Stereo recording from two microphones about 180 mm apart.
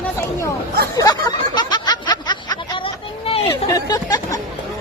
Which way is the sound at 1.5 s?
25° left (ahead or behind).